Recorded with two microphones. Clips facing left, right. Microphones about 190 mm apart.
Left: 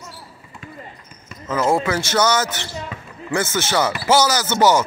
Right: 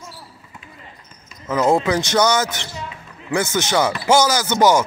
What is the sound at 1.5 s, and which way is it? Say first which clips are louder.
A man's voice: right 2 dB; 15° right (ahead or behind).